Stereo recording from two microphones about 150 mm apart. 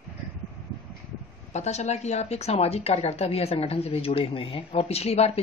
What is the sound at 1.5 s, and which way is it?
A woman's voice, 50° left (ahead or behind).